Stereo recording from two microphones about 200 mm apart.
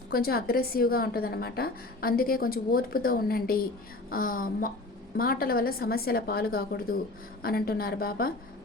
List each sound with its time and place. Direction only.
0.1 s a woman's voice: 50° left (ahead or behind)